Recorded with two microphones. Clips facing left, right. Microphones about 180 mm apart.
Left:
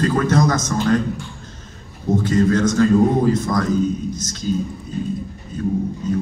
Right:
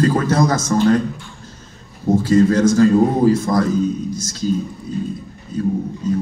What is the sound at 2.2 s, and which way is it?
A man's voice, 30° right (ahead or behind).